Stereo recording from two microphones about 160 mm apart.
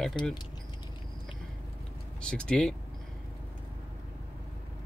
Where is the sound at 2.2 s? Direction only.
5° left (ahead or behind).